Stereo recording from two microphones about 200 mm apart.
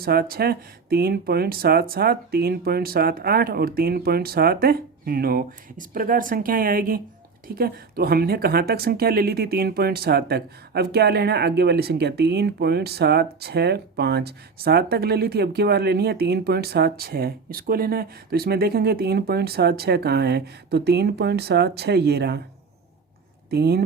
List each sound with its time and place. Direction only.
0.0 s speech: 50° right (ahead or behind)
23.5 s speech: 55° right (ahead or behind)